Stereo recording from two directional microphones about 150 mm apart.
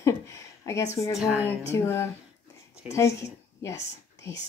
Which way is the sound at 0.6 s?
20° left (ahead or behind).